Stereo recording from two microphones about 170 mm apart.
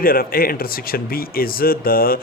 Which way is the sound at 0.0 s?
60° left (ahead or behind).